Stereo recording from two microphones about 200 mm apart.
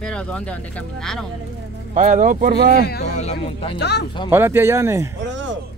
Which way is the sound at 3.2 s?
35° left (ahead or behind).